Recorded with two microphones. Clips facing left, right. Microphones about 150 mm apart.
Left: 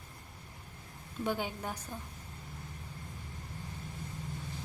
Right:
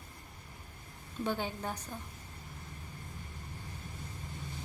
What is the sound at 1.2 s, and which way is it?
Speech, 10° left (ahead or behind).